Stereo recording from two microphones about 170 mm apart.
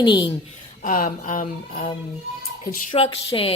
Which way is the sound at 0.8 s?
50° left (ahead or behind).